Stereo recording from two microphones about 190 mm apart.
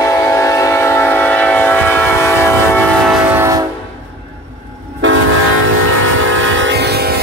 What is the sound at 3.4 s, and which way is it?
Train, 15° right (ahead or behind).